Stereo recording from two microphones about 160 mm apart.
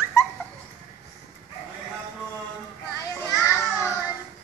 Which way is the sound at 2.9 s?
15° left (ahead or behind).